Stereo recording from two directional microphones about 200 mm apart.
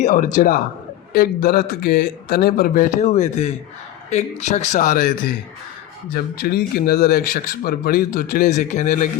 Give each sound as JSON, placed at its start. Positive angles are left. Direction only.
{"t": 0.0, "sound": "speech", "side_deg": 40}
{"t": 6.1, "sound": "speech", "side_deg": 50}